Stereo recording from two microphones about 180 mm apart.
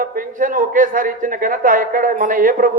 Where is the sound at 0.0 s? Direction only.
50° right (ahead or behind).